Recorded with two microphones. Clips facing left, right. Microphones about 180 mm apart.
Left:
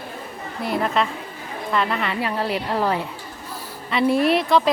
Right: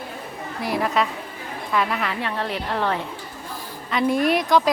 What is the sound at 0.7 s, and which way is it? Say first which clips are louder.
A woman's voice: left 1 dB; 5° right (ahead or behind).